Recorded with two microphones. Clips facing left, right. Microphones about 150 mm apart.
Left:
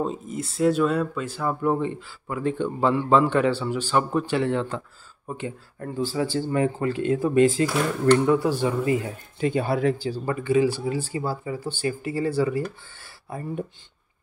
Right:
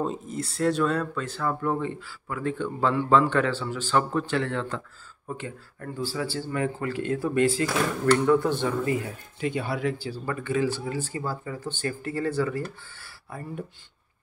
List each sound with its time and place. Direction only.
0.0 s speech: centre (ahead or behind)
9.4 s speech: 35° left (ahead or behind)
10.0 s speech: 20° left (ahead or behind)